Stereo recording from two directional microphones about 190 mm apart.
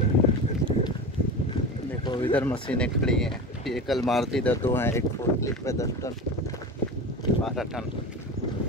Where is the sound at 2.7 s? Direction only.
5° left (ahead or behind).